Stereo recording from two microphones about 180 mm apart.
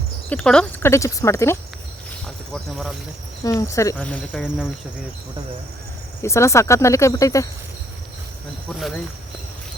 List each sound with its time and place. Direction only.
0.3 s speech: 5° left (ahead or behind)
2.5 s speech: centre (ahead or behind)
3.4 s speech: 20° left (ahead or behind)
3.9 s speech: 5° left (ahead or behind)
6.2 s speech: 15° left (ahead or behind)